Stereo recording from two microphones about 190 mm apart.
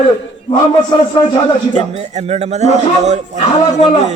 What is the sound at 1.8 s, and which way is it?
A man's voice, 35° right (ahead or behind).